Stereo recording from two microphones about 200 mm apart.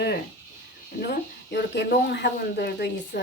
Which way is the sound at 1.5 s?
55° left (ahead or behind).